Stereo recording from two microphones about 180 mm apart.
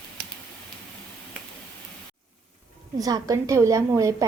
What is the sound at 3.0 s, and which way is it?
A woman's voice, 20° right (ahead or behind).